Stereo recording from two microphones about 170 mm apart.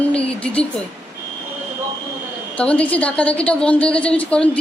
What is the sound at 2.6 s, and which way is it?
A woman's voice, 10° left (ahead or behind).